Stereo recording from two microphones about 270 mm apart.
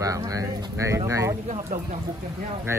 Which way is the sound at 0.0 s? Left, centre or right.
Centre.